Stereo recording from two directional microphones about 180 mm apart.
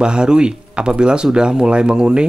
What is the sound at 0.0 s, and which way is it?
Speech, 5° right (ahead or behind).